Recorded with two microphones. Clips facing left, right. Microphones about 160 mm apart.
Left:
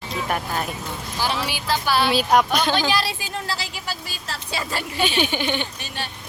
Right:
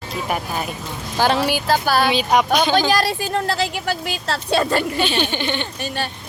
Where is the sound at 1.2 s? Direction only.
55° right (ahead or behind).